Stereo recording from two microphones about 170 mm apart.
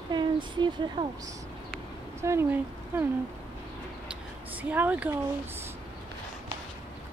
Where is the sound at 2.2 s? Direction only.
15° right (ahead or behind).